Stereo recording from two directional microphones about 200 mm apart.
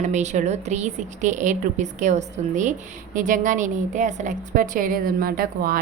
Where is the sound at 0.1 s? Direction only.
35° right (ahead or behind).